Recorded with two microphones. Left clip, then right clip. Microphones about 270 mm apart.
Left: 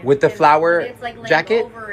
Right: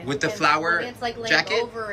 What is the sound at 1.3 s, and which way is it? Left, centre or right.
Speech, centre.